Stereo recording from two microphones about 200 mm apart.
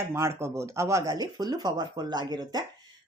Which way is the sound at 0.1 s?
15° right (ahead or behind).